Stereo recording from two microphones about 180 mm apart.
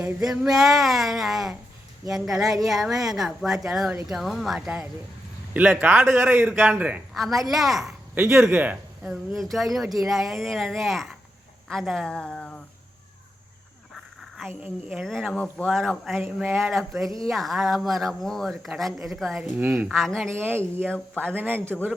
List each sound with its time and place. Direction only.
0.0 s a man's voice: centre (ahead or behind)
8.2 s speech: 15° right (ahead or behind); by 12.5 s 5° left (ahead or behind)
13.9 s a sound: centre (ahead or behind)
14.6 s speech: 5° right (ahead or behind)
19.9 s speech: centre (ahead or behind)
20.3 s a man's voice: 10° right (ahead or behind)